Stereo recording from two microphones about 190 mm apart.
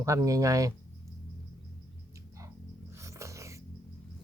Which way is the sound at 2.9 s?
15° right (ahead or behind).